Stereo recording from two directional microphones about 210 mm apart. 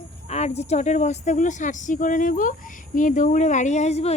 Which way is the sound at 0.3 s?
30° left (ahead or behind).